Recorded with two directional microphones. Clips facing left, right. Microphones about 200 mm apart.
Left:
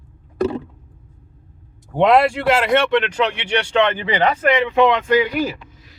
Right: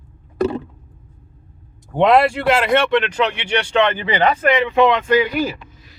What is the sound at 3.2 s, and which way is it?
Speech, 30° left (ahead or behind).